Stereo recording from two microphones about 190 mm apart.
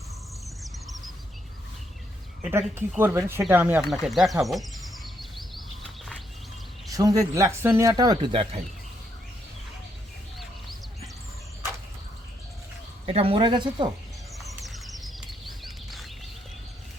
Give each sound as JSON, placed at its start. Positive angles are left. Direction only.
{"t": 2.4, "sound": "speech", "side_deg": -10}
{"t": 3.4, "sound": "bird", "side_deg": -10}
{"t": 6.9, "sound": "speech", "side_deg": -20}
{"t": 13.1, "sound": "speech", "side_deg": -30}
{"t": 14.3, "sound": "a sound", "side_deg": 0}